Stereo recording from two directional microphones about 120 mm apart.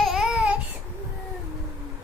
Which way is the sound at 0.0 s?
Centre (ahead or behind).